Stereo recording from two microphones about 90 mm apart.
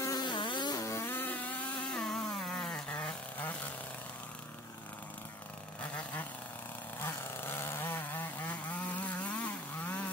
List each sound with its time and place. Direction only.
0.0 s a sound: 50° left (ahead or behind)
0.8 s vehicle: 30° left (ahead or behind)
1.9 s chainsaw: 5° left (ahead or behind)
7.4 s vehicle: 25° left (ahead or behind)
9.0 s chainsaw: 15° left (ahead or behind)